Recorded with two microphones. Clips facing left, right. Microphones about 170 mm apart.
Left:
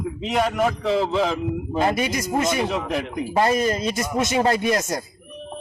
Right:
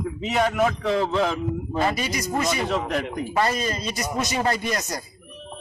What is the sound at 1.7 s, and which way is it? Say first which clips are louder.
Speech: left 3 dB; 20° left (ahead or behind).